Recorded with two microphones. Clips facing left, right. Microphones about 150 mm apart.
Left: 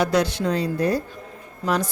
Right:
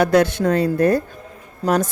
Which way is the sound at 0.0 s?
55° right (ahead or behind).